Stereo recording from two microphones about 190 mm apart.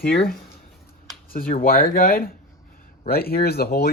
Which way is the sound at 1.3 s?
50° left (ahead or behind).